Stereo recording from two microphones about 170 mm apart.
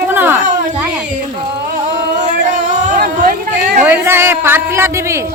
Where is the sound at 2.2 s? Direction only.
45° right (ahead or behind).